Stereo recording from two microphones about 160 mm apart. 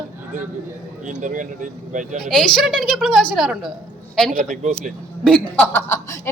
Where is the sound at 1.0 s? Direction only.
50° right (ahead or behind).